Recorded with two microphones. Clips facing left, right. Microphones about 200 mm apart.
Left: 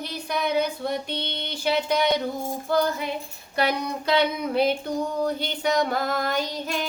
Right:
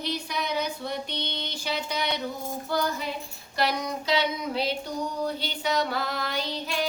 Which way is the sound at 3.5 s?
55° left (ahead or behind).